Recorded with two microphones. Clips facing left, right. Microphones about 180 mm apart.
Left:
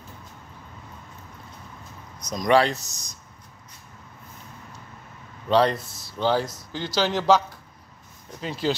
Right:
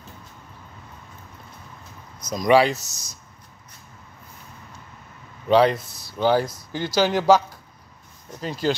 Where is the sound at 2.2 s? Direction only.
5° right (ahead or behind).